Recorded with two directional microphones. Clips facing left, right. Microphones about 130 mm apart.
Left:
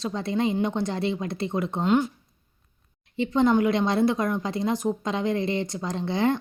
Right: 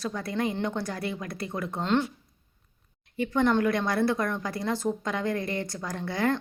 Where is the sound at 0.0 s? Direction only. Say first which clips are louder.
Left 4 dB; 25° left (ahead or behind).